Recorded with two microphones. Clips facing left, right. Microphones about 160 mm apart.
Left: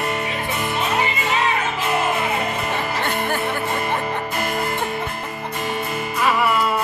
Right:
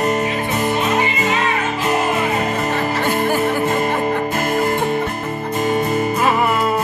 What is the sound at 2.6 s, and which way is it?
Music, 45° right (ahead or behind).